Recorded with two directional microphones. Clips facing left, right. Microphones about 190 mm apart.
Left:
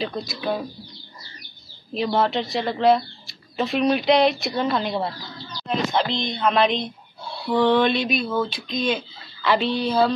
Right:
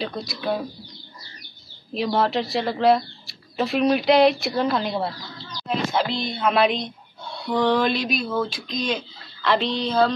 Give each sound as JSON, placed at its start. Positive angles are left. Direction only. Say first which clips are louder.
{"t": 0.0, "sound": "speech", "louder": "left 1 dB", "side_deg": 0}
{"t": 2.0, "sound": "speech", "louder": "even", "side_deg": 0}